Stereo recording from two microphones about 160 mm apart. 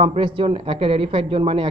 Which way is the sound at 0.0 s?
30° right (ahead or behind).